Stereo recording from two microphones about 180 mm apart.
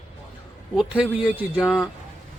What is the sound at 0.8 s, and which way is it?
A man's voice, 5° right (ahead or behind).